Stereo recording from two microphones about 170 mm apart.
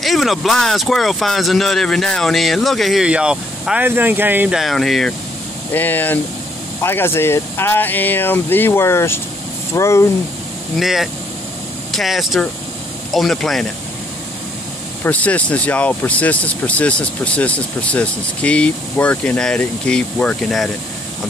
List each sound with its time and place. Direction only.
0.0 s speech: centre (ahead or behind); by 10.0 s 15° left (ahead or behind)
10.8 s speech: centre (ahead or behind)
15.0 s speech: 10° left (ahead or behind)